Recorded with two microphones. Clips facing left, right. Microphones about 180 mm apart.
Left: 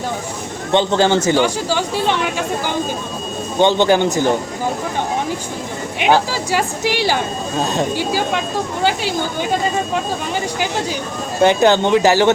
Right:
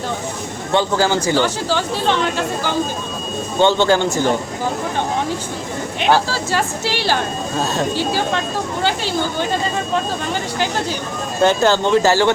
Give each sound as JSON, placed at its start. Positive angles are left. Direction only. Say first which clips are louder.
{"t": 0.7, "sound": "speech", "louder": "left 2 dB", "side_deg": 20}
{"t": 3.6, "sound": "speech", "louder": "left 1 dB", "side_deg": 15}
{"t": 6.0, "sound": "speech", "louder": "left 1 dB", "side_deg": 15}
{"t": 11.4, "sound": "speech", "louder": "left 2 dB", "side_deg": 15}